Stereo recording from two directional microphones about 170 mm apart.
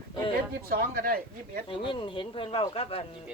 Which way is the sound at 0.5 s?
60° right (ahead or behind).